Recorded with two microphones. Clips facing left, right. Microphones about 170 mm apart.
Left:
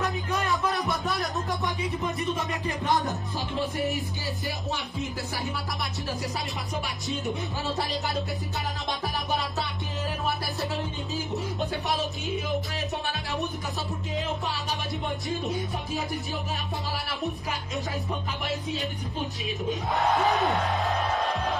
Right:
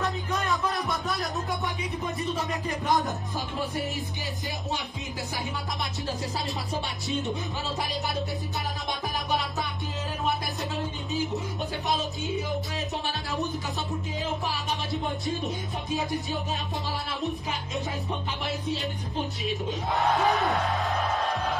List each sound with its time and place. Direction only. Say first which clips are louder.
0.3 s music: left 2 dB; centre (ahead or behind)
3.7 s music: left 3 dB; 20° left (ahead or behind)
7.1 s speech: right 1 dB; centre (ahead or behind)
12.3 s speech: right 1 dB; 20° right (ahead or behind)
20.0 s speech: even; centre (ahead or behind)